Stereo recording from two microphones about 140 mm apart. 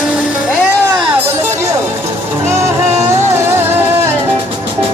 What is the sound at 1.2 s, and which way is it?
Music, 15° right (ahead or behind).